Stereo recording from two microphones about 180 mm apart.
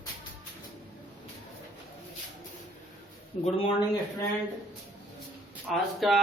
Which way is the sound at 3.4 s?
30° left (ahead or behind).